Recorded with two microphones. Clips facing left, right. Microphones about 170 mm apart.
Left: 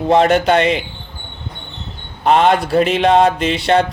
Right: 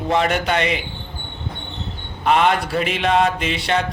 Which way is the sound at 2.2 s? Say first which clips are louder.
Left 4 dB; 35° left (ahead or behind).